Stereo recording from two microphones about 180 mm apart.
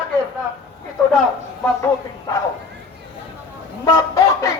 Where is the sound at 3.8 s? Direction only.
20° left (ahead or behind).